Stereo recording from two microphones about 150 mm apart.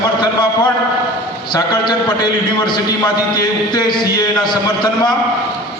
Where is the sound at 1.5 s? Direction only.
30° left (ahead or behind).